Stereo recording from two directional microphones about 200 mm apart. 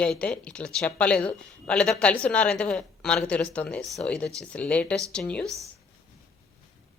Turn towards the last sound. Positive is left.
turn(degrees=5)  # may be behind; listen again after turning